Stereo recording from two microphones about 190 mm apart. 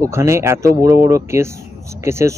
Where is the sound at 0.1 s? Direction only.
15° right (ahead or behind).